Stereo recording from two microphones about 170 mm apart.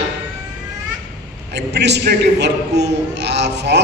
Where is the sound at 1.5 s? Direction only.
80° right.